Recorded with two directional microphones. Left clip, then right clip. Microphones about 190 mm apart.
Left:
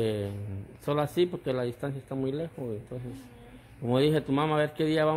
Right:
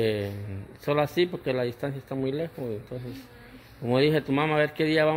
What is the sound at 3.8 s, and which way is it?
A man's voice, centre (ahead or behind).